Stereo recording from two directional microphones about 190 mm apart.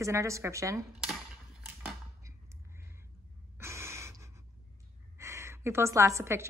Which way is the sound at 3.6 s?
15° right (ahead or behind).